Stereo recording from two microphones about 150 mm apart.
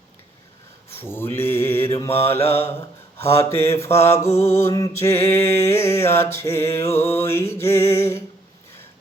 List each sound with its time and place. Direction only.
0.9 s mantra: 15° left (ahead or behind)